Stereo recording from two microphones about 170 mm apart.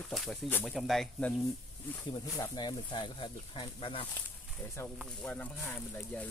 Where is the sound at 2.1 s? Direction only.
25° left (ahead or behind).